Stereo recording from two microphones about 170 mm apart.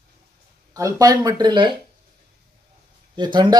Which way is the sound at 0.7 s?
20° right (ahead or behind).